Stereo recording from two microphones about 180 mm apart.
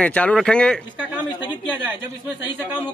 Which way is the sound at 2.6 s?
10° right (ahead or behind).